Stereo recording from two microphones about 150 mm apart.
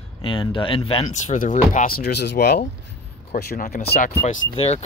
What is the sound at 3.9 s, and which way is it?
Speech, 65° left (ahead or behind).